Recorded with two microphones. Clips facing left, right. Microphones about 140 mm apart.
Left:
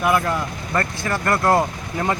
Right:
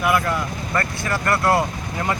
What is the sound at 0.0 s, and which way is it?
Speech, 25° left (ahead or behind).